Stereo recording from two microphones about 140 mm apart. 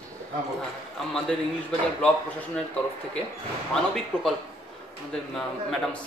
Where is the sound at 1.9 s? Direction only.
10° left (ahead or behind).